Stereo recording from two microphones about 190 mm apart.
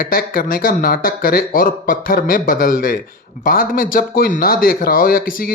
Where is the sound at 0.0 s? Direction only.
50° left (ahead or behind).